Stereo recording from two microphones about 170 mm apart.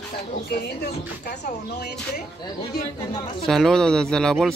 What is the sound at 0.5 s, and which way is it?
Speech, 70° left (ahead or behind).